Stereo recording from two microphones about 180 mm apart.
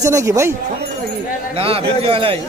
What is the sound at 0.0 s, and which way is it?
Speech, 20° right (ahead or behind).